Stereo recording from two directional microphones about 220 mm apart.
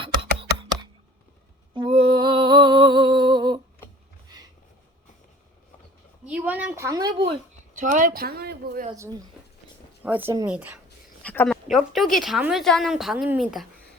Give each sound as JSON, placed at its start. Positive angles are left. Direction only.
{"t": 0.0, "sound": "computer keyboard", "side_deg": -25}
{"t": 1.7, "sound": "a sound", "side_deg": -25}
{"t": 6.2, "sound": "a sound", "side_deg": -5}
{"t": 7.8, "sound": "speech", "side_deg": -40}
{"t": 10.0, "sound": "speech", "side_deg": -10}
{"t": 11.2, "sound": "a woman's voice", "side_deg": 5}